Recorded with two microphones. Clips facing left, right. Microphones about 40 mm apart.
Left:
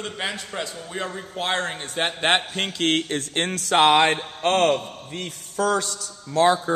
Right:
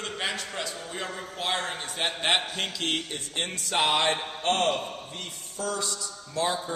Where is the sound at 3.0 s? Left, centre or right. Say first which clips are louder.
Left 7 dB; left.